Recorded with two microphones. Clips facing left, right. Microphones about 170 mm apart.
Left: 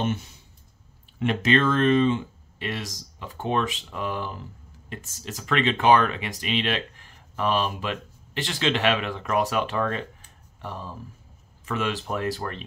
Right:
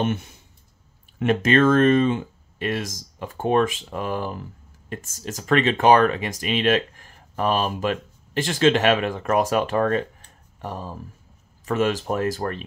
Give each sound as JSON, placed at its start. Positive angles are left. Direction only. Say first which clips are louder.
{"t": 0.0, "sound": "speech", "louder": "right 3 dB", "side_deg": -55}
{"t": 1.2, "sound": "speech", "louder": "right 4 dB", "side_deg": -45}